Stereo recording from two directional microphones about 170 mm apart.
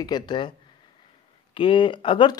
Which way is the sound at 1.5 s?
30° left (ahead or behind).